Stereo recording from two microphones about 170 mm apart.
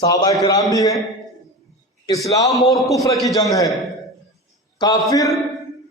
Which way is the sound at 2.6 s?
Centre (ahead or behind).